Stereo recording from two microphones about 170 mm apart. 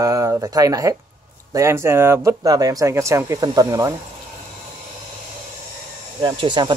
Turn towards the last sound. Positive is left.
turn(degrees=-25)  # may be behind; listen again after turning